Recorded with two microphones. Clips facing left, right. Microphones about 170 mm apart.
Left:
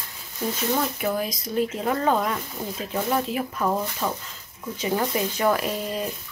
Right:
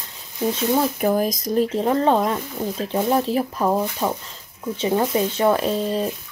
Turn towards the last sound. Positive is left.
turn(degrees=-30)  # may be behind; listen again after turning